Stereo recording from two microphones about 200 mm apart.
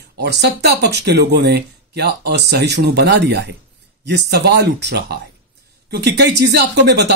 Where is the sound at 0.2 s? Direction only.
55° right (ahead or behind).